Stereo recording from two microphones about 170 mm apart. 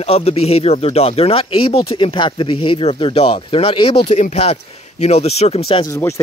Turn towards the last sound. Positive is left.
turn(degrees=15)  # may be behind; listen again after turning